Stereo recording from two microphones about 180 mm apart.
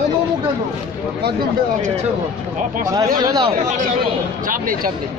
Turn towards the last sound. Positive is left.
turn(degrees=-20)  # may be behind; listen again after turning